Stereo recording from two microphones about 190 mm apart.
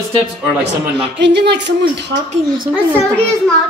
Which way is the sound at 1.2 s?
65° right (ahead or behind).